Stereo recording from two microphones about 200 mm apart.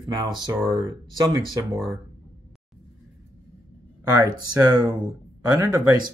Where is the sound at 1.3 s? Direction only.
15° right (ahead or behind).